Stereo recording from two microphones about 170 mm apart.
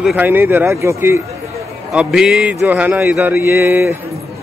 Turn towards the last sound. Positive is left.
turn(degrees=-15)  # may be behind; listen again after turning